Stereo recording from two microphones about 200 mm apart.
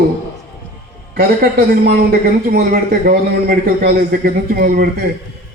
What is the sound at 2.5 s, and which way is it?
A man's voice, 50° right (ahead or behind).